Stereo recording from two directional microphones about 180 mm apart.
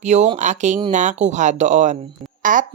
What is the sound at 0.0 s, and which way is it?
Speech, 40° right (ahead or behind).